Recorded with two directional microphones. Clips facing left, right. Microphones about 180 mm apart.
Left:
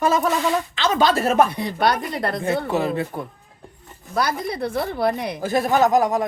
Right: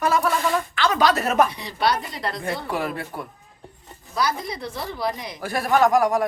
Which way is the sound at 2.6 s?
25° left (ahead or behind).